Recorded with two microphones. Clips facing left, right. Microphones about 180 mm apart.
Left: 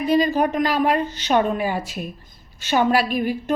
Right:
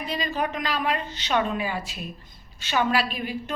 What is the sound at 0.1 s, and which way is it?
A woman's voice, 45° left (ahead or behind).